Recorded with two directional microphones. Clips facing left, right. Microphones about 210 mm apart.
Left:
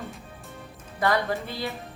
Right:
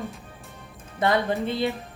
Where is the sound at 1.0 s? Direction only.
20° right (ahead or behind).